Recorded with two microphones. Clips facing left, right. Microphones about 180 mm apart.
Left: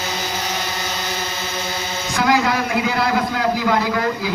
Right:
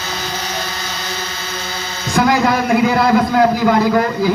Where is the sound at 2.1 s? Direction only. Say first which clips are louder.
Right 4 dB; 50° right (ahead or behind).